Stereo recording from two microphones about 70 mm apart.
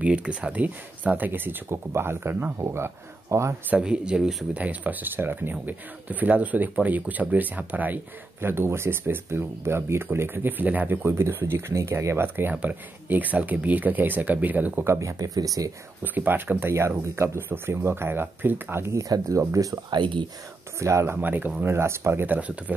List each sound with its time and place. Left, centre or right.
0.0 s speech: centre
2.6 s speech: right
3.7 s speech: centre
4.6 s speech: right
14.9 s speech: right
16.0 s speech: right
18.9 s speech: right
20.8 s speech: right
21.2 s speech: right
21.6 s speech: right
22.2 s speech: right